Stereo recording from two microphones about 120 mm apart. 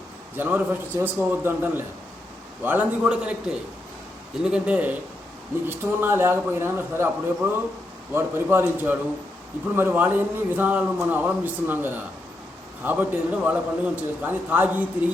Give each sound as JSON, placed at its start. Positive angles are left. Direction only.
{"t": 0.3, "sound": "a man's voice", "side_deg": -15}